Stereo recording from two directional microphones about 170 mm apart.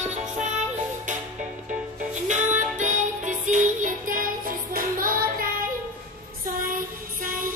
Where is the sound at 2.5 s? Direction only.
45° right (ahead or behind).